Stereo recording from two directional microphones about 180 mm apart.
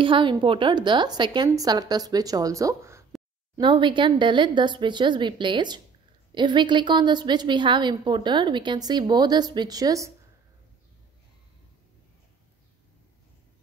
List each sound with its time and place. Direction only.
0.0 s a woman's voice: 25° right (ahead or behind)
3.5 s a woman's voice: 25° right (ahead or behind)